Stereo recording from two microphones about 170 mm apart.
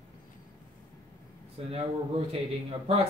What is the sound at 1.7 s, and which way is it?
A man's voice, 35° right (ahead or behind).